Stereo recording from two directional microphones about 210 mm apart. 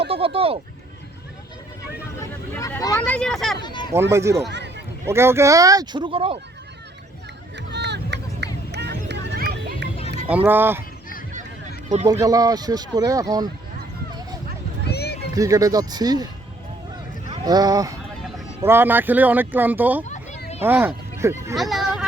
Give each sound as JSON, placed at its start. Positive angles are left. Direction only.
{"t": 0.1, "sound": "speech", "side_deg": -25}
{"t": 2.6, "sound": "speech", "side_deg": 15}
{"t": 3.0, "sound": "speech", "side_deg": 5}
{"t": 3.6, "sound": "a sound", "side_deg": 20}
{"t": 4.1, "sound": "speech", "side_deg": -15}
{"t": 7.5, "sound": "a sound", "side_deg": -55}
{"t": 10.2, "sound": "speech", "side_deg": -10}
{"t": 12.0, "sound": "speech", "side_deg": -15}
{"t": 14.8, "sound": "a sound", "side_deg": 50}
{"t": 15.4, "sound": "speech", "side_deg": -15}
{"t": 17.3, "sound": "speech", "side_deg": -20}
{"t": 20.1, "sound": "a sound", "side_deg": 35}
{"t": 20.6, "sound": "speech", "side_deg": -10}
{"t": 21.5, "sound": "speech", "side_deg": 0}